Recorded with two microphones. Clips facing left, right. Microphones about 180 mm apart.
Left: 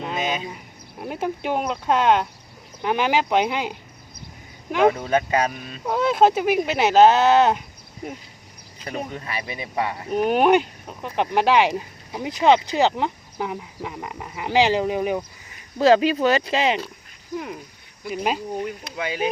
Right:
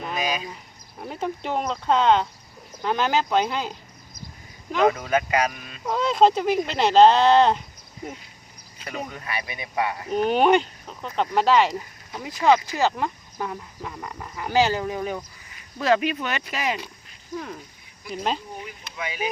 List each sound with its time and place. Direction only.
0.0 s a sound: 25° left (ahead or behind)
1.0 s speech: 10° left (ahead or behind)
4.9 s speech: 30° left (ahead or behind)
5.8 s speech: 10° left (ahead or behind)
8.9 s speech: 30° left (ahead or behind)
10.1 s speech: 10° left (ahead or behind); by 16.7 s 25° left (ahead or behind)
17.3 s speech: 10° left (ahead or behind)
18.6 s speech: 65° left (ahead or behind)